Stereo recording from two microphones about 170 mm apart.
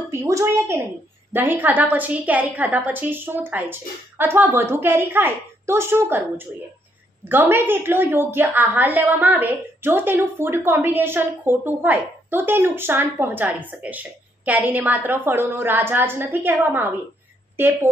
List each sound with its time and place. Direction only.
0.1 s a woman's voice: 15° right (ahead or behind)